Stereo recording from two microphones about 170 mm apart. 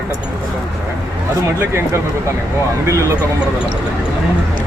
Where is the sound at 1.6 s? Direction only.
15° right (ahead or behind).